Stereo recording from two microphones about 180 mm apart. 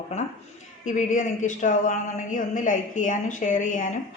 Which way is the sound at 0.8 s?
45° left (ahead or behind).